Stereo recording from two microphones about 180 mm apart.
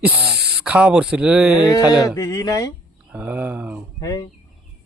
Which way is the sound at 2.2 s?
20° left (ahead or behind).